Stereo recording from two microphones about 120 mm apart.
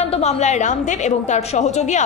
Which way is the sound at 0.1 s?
70° left (ahead or behind).